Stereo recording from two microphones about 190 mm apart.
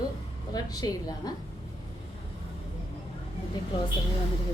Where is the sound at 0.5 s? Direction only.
20° left (ahead or behind).